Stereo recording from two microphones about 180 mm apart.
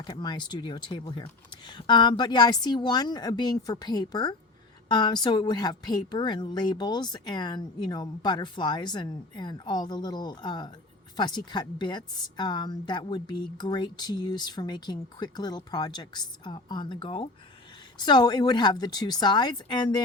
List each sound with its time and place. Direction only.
0.0 s a woman's voice: 25° left (ahead or behind)